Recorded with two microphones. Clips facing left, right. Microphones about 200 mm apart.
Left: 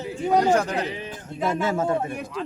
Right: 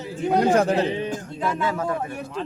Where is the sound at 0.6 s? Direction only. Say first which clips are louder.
Right 5 dB; 30° right (ahead or behind).